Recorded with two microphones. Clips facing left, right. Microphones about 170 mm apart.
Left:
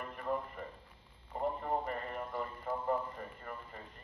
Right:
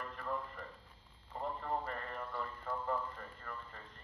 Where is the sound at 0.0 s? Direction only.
15° left (ahead or behind).